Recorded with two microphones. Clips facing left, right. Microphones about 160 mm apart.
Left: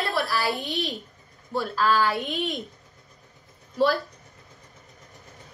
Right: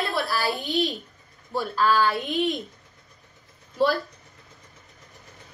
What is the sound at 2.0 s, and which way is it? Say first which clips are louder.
Speech: right 2 dB; centre (ahead or behind).